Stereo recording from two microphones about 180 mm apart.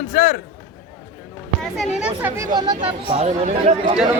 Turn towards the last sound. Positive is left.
turn(degrees=-35)  # may be behind; listen again after turning